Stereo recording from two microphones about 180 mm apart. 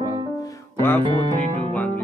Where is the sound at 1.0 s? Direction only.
30° right (ahead or behind).